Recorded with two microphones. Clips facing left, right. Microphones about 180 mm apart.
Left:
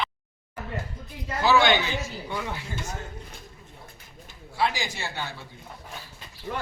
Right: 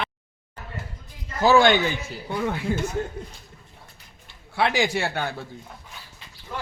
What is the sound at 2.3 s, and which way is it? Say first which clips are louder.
Speech: right 10 dB; 55° right (ahead or behind).